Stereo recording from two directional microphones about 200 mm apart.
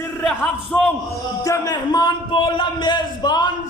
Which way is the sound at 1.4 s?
20° left (ahead or behind).